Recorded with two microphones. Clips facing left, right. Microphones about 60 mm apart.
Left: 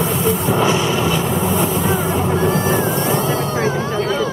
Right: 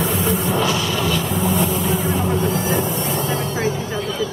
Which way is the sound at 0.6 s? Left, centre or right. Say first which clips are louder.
Left 4 dB; left.